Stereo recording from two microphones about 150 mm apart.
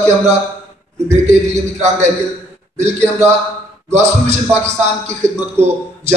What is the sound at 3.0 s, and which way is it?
Speech, 20° right (ahead or behind).